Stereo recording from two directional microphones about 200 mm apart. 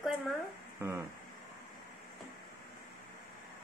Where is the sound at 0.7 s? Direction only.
15° right (ahead or behind).